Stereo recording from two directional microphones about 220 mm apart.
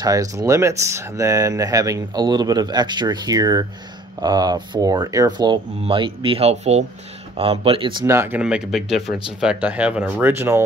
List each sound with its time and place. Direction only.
0.0 s speech: 15° right (ahead or behind)
8.0 s speech: 10° right (ahead or behind)